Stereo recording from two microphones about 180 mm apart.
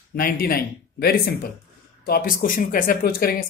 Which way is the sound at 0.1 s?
55° left (ahead or behind).